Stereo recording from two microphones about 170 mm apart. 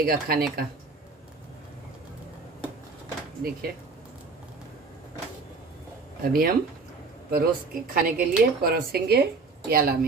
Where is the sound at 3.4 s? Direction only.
60° right (ahead or behind).